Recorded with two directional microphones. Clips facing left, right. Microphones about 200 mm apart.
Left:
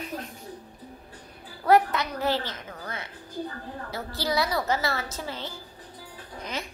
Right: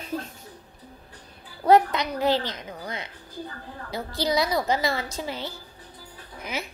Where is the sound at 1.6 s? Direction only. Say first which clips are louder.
Right 2 dB; 20° right (ahead or behind).